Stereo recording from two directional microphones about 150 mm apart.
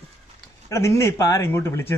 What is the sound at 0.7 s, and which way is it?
Speech, 20° left (ahead or behind).